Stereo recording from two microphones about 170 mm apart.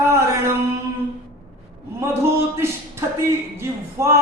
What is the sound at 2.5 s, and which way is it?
Speech, 15° right (ahead or behind).